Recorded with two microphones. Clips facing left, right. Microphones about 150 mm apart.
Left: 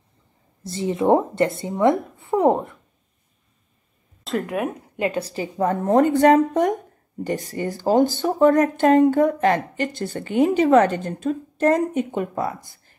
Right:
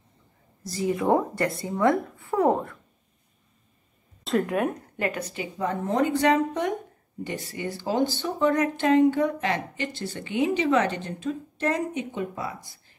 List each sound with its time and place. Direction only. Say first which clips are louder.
0.7 s speech: left 5 dB; 25° left (ahead or behind)
4.2 s speech: even; centre (ahead or behind)
4.9 s a woman's voice: left 5 dB; 20° left (ahead or behind)
5.2 s speech: left 6 dB; 35° left (ahead or behind)